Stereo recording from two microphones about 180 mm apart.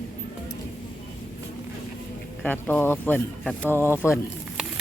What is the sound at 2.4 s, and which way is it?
Speech, 10° left (ahead or behind).